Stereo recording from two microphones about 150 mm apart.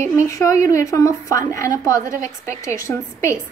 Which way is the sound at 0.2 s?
20° left (ahead or behind).